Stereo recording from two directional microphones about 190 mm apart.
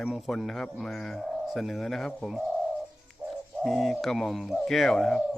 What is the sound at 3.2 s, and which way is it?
Bird, 15° right (ahead or behind).